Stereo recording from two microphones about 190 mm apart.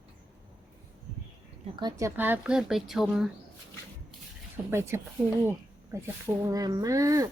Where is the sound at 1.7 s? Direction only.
20° right (ahead or behind); by 3.2 s centre (ahead or behind).